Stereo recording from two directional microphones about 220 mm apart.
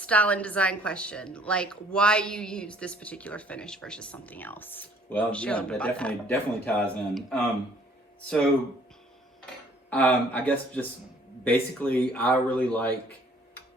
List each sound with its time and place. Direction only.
0.0 s a woman's voice: 5° left (ahead or behind)
9.9 s a man's voice: 5° left (ahead or behind)